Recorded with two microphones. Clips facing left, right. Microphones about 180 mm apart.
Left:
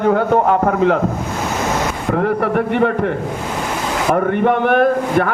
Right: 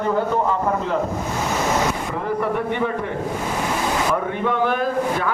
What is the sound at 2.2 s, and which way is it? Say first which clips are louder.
Speech: left 6 dB; 70° left (ahead or behind).